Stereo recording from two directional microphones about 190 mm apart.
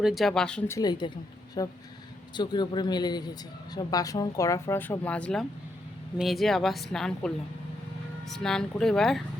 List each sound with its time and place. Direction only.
0.0 s a woman's voice: centre (ahead or behind)
0.8 s a man's voice: 20° left (ahead or behind); by 9.2 s centre (ahead or behind)